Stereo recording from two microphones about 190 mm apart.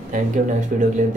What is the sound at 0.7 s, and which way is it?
Speech, 45° right (ahead or behind).